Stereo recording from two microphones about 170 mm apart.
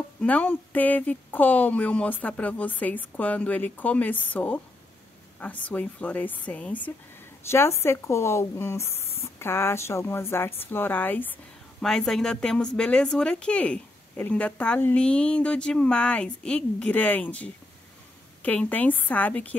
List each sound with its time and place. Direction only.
0.2 s speech: 10° left (ahead or behind)